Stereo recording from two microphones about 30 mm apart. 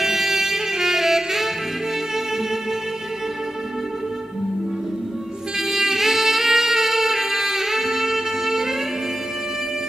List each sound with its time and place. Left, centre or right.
0.0 s saxophone: centre
5.7 s music: centre